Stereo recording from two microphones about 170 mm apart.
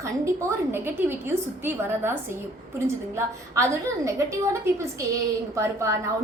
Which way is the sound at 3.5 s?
15° right (ahead or behind).